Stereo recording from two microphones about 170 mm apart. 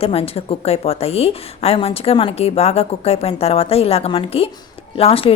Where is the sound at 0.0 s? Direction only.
35° left (ahead or behind).